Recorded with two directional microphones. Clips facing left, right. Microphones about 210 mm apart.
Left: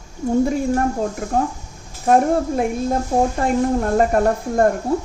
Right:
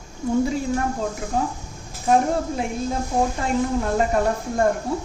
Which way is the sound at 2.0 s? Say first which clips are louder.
Left 4 dB; 50° left (ahead or behind).